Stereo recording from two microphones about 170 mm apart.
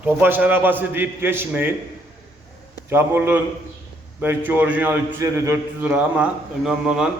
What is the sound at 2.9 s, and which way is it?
A man's voice, 10° right (ahead or behind).